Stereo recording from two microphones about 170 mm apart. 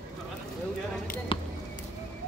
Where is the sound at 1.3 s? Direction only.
30° left (ahead or behind).